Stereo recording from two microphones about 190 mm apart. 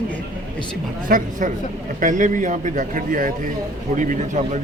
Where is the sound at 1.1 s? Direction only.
40° right (ahead or behind).